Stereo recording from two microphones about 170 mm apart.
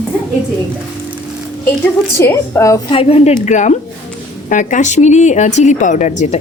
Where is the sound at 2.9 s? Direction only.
35° left (ahead or behind).